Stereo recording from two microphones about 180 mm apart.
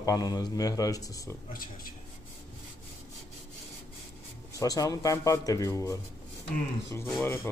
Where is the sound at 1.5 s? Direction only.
50° left (ahead or behind).